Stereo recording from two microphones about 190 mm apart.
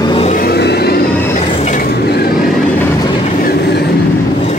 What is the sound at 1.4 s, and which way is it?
Train, 30° left (ahead or behind).